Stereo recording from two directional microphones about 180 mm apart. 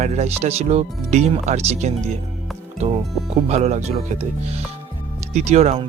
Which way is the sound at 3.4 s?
35° right (ahead or behind).